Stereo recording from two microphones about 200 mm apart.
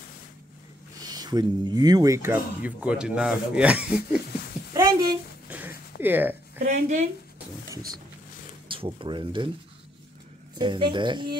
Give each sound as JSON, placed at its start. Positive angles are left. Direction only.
{"t": 1.0, "sound": "speech", "side_deg": -20}
{"t": 4.7, "sound": "a sound", "side_deg": -20}
{"t": 5.5, "sound": "a sound", "side_deg": -10}
{"t": 6.6, "sound": "a woman's voice", "side_deg": -35}
{"t": 8.6, "sound": "speech", "side_deg": -25}
{"t": 10.6, "sound": "speech", "side_deg": -25}